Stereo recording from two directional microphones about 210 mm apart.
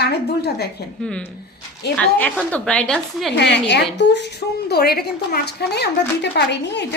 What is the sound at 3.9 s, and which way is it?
A woman's voice, 55° left (ahead or behind).